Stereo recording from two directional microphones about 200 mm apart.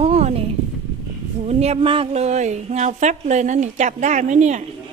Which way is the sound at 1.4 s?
35° right (ahead or behind).